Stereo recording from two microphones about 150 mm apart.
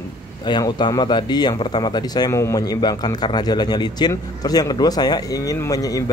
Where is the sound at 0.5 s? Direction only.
30° left (ahead or behind).